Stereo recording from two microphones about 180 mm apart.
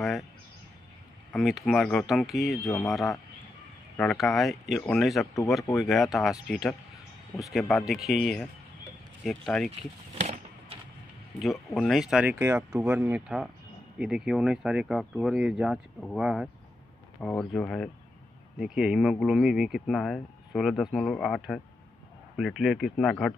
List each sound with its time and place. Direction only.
1.3 s speech: centre (ahead or behind)
9.7 s a sound: 40° right (ahead or behind)
11.4 s speech: centre (ahead or behind)